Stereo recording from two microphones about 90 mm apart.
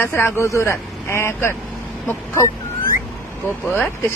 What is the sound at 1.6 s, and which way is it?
Vehicle, 20° left (ahead or behind).